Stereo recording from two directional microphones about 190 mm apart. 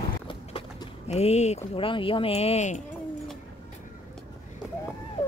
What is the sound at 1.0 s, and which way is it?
Speech, 35° left (ahead or behind).